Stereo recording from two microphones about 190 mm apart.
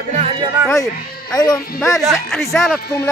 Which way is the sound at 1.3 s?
20° left (ahead or behind).